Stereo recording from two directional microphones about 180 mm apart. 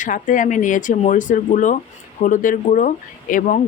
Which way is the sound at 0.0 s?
45° left (ahead or behind).